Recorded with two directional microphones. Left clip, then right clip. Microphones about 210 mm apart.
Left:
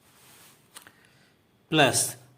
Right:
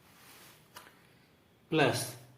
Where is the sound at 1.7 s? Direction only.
40° left (ahead or behind).